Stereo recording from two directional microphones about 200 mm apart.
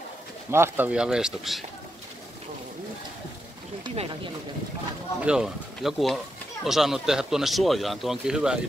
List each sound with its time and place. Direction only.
0.5 s speech: 10° right (ahead or behind)
3.8 s speech: 30° right (ahead or behind)
5.2 s speech: 5° right (ahead or behind)